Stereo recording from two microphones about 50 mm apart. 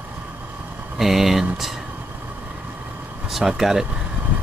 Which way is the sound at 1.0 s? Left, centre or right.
Centre.